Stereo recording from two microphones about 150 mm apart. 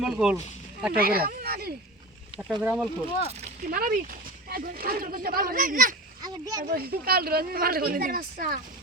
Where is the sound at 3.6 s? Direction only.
75° right (ahead or behind).